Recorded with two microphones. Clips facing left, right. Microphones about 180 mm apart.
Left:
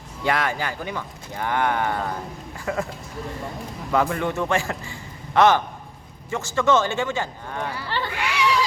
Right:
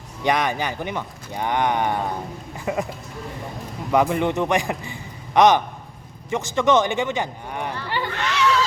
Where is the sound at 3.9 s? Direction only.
15° right (ahead or behind).